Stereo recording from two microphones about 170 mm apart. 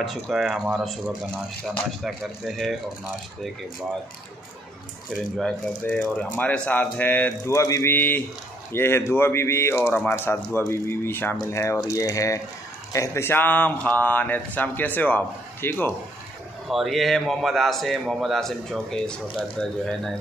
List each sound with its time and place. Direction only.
0.0 s a man's voice: centre (ahead or behind)
5.9 s speech: 5° left (ahead or behind)
16.6 s a man's voice: centre (ahead or behind)